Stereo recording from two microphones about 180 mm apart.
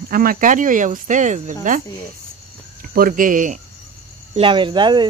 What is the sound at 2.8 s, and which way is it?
Speech, 50° right (ahead or behind).